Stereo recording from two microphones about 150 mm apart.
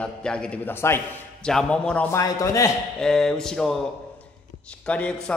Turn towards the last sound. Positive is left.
turn(degrees=5)  # may be behind; listen again after turning